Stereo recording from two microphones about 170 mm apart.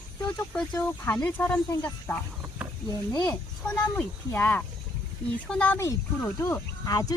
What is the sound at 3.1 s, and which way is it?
Speech, 25° left (ahead or behind).